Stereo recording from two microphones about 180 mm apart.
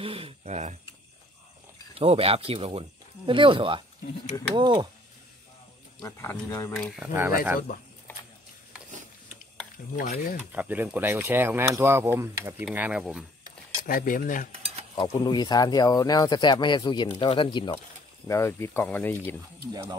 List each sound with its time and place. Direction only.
0.0 s speech: 30° right (ahead or behind)
2.0 s speech: 30° right (ahead or behind)
6.0 s speech: 15° left (ahead or behind)
6.7 s speech: 5° right (ahead or behind)
9.9 s speech: 55° left (ahead or behind)
10.5 s speech: 10° right (ahead or behind)
13.8 s speech: 50° left (ahead or behind)
15.0 s speech: 25° left (ahead or behind)
18.2 s speech: 15° left (ahead or behind)
19.7 s speech: 25° right (ahead or behind)